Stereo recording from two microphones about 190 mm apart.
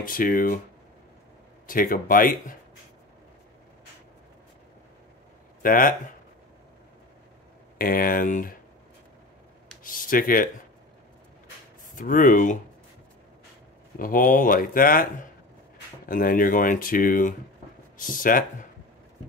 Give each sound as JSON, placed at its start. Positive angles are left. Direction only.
{"t": 0.0, "sound": "speech", "side_deg": 50}
{"t": 1.7, "sound": "speech", "side_deg": 45}
{"t": 5.6, "sound": "speech", "side_deg": 45}
{"t": 7.7, "sound": "speech", "side_deg": 50}
{"t": 9.8, "sound": "speech", "side_deg": 45}
{"t": 11.9, "sound": "speech", "side_deg": 45}
{"t": 13.9, "sound": "speech", "side_deg": 45}
{"t": 16.1, "sound": "speech", "side_deg": 45}